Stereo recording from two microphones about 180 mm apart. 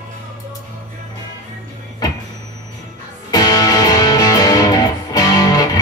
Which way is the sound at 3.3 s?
20° left (ahead or behind).